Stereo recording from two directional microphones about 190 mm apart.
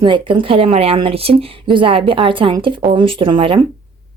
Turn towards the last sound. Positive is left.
turn(degrees=-25)  # may be behind; listen again after turning